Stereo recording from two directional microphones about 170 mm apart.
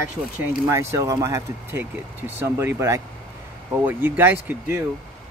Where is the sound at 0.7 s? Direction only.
15° right (ahead or behind).